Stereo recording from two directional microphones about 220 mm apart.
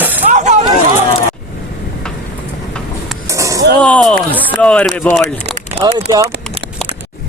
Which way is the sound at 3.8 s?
5° left (ahead or behind).